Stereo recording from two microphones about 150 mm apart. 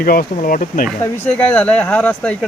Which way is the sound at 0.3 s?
60° left (ahead or behind).